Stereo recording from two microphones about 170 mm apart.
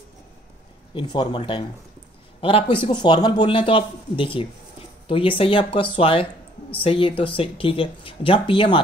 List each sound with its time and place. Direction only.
0.9 s speech: 25° left (ahead or behind)